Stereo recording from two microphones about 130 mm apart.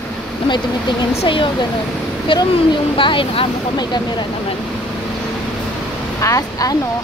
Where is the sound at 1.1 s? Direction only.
45° left (ahead or behind).